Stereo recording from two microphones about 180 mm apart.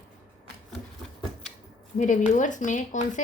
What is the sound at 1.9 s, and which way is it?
A woman's voice, 45° left (ahead or behind).